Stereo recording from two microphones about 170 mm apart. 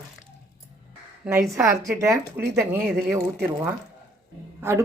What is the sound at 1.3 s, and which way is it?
Speech, 15° right (ahead or behind).